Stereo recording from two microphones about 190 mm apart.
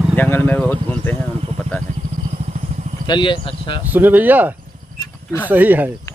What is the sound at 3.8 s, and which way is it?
Speech, 10° right (ahead or behind).